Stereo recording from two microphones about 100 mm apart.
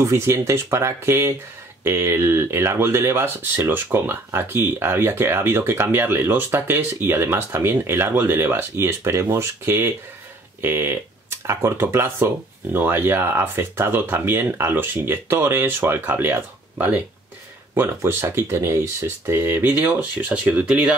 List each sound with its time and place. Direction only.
0.0 s speech: 30° right (ahead or behind)
17.7 s speech: 25° right (ahead or behind); by 20.9 s 10° right (ahead or behind)